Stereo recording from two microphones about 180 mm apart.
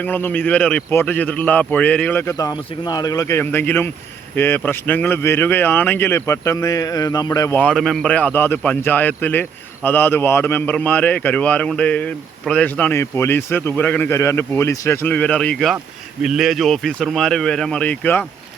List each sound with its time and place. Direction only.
0.0 s speech: 10° left (ahead or behind)